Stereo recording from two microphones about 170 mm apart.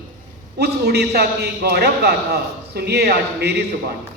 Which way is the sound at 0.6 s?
75° right (ahead or behind).